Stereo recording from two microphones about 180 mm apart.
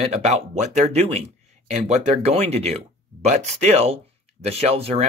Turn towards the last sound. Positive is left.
turn(degrees=-35)  # may be behind; listen again after turning